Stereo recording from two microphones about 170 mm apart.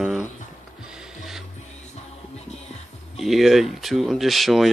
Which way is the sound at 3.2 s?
Centre (ahead or behind).